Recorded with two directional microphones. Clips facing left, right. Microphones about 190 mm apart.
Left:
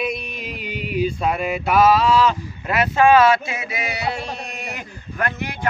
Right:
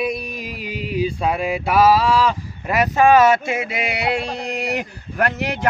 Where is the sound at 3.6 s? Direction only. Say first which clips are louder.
Right 4 dB; 65° right (ahead or behind).